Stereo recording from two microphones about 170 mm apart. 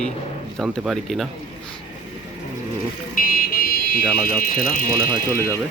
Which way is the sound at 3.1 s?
55° left (ahead or behind).